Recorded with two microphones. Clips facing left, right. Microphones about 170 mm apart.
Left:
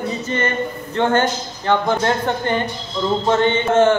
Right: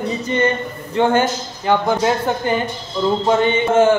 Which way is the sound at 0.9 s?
10° right (ahead or behind).